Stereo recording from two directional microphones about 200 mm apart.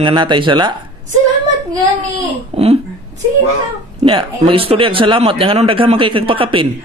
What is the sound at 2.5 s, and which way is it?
Speech, 30° right (ahead or behind).